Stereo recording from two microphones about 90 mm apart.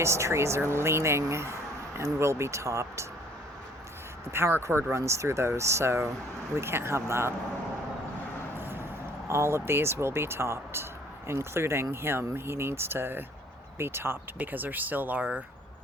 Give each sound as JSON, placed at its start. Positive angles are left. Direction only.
{"t": 0.0, "sound": "speech", "side_deg": -30}
{"t": 4.3, "sound": "speech", "side_deg": -30}
{"t": 8.5, "sound": "vehicle", "side_deg": -25}
{"t": 9.2, "sound": "speech", "side_deg": -30}